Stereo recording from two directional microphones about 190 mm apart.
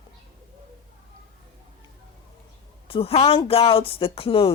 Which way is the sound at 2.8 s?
30° left (ahead or behind).